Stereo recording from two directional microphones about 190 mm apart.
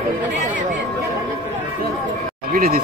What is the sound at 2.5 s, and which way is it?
Speech, 50° right (ahead or behind).